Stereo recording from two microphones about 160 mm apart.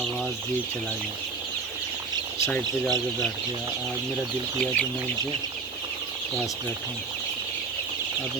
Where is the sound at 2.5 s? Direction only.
5° left (ahead or behind).